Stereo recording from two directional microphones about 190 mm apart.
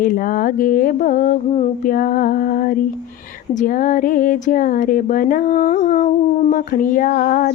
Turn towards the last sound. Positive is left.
turn(degrees=45)  # may be behind; listen again after turning